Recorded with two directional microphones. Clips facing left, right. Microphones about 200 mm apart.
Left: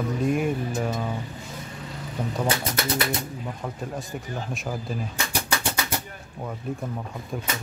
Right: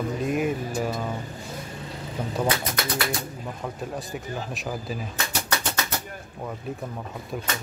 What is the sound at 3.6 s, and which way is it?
Speech, centre (ahead or behind).